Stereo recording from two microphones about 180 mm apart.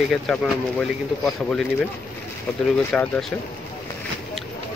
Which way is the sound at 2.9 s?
5° left (ahead or behind).